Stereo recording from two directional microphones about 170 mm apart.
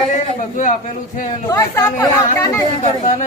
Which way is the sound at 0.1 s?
50° left (ahead or behind).